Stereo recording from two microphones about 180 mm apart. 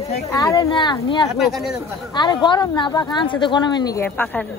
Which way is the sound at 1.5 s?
Centre (ahead or behind).